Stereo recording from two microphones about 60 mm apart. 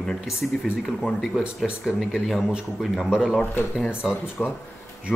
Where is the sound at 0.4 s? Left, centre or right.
Centre.